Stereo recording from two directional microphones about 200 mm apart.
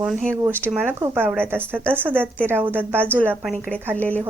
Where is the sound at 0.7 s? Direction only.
10° right (ahead or behind).